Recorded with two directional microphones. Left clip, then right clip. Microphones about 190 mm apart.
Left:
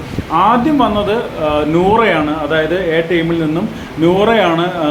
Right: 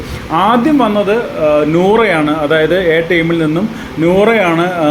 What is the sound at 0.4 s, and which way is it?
Speech, 10° right (ahead or behind).